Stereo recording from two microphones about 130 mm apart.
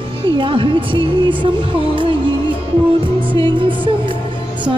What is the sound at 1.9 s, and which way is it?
Music, 40° right (ahead or behind).